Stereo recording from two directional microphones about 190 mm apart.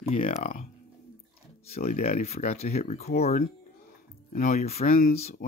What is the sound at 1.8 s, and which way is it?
Speech, 50° left (ahead or behind).